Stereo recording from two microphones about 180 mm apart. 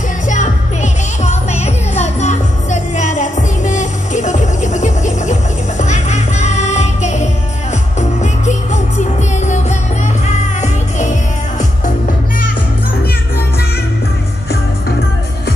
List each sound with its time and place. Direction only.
1.2 s music: 40° left (ahead or behind)
10.2 s music: 40° left (ahead or behind)